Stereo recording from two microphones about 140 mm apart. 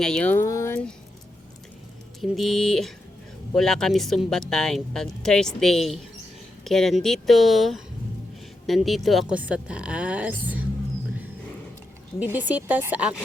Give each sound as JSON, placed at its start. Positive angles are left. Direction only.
{"t": 0.0, "sound": "speech", "side_deg": 5}
{"t": 2.2, "sound": "speech", "side_deg": 0}
{"t": 12.2, "sound": "speech", "side_deg": -15}